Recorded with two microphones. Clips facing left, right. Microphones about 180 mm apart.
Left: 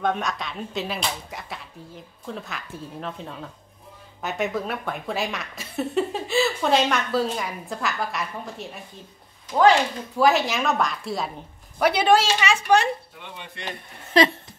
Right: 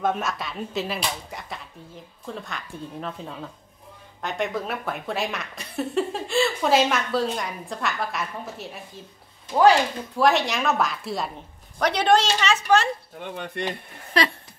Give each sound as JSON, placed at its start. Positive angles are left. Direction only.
{"t": 0.0, "sound": "speech", "side_deg": -5}
{"t": 10.1, "sound": "a woman's voice", "side_deg": 0}
{"t": 13.2, "sound": "speech", "side_deg": -50}
{"t": 14.2, "sound": "speech", "side_deg": 20}